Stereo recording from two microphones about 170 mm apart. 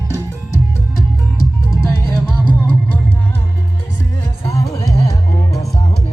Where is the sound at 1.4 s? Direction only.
20° left (ahead or behind).